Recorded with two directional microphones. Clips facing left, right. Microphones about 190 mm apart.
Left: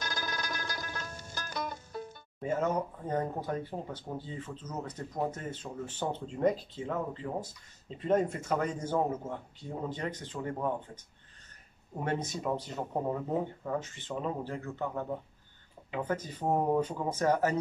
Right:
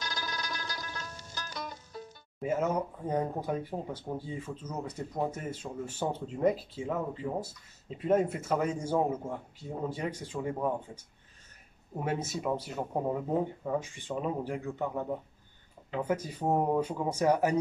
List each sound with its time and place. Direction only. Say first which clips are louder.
0.0 s music: left 1 dB; 50° left (ahead or behind)
2.4 s speech: right 1 dB; 10° right (ahead or behind)
11.9 s speech: right 1 dB; 5° right (ahead or behind)